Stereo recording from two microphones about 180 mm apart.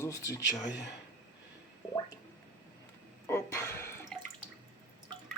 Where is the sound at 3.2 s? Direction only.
15° left (ahead or behind).